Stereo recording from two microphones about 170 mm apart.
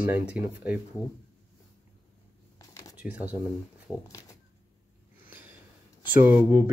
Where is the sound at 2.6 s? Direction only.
20° left (ahead or behind).